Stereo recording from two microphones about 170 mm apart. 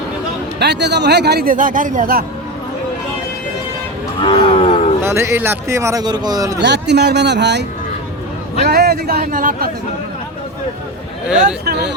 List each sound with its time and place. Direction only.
0.6 s a man's voice: 90° right; by 2.2 s 55° right (ahead or behind)
4.2 s a sound: 25° left (ahead or behind)
5.0 s speech: 15° right (ahead or behind)
6.6 s speech: 90° right
8.6 s speech: 65° right (ahead or behind)